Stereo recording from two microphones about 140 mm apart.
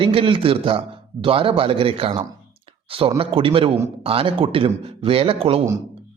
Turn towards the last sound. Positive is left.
turn(degrees=-45)  # may be behind; listen again after turning